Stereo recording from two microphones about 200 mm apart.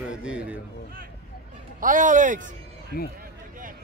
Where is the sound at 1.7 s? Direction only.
40° right (ahead or behind).